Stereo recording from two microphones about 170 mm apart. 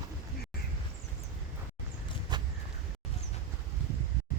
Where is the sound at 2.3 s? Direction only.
25° right (ahead or behind).